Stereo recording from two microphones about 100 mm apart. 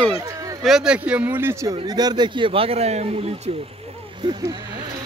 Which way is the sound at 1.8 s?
40° right (ahead or behind).